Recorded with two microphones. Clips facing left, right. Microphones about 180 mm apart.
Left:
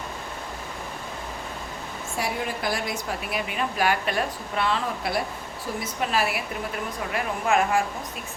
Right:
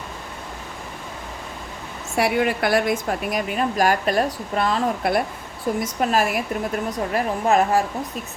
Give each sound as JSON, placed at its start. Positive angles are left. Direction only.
{"t": 2.1, "sound": "a woman's voice", "side_deg": -70}